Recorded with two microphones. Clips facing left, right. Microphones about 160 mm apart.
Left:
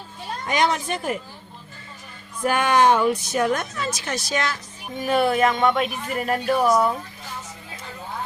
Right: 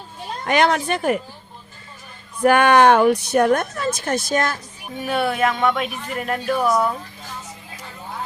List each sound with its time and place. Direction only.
0.4 s speech: 65° right (ahead or behind)
2.4 s speech: 65° right (ahead or behind)
4.9 s speech: centre (ahead or behind)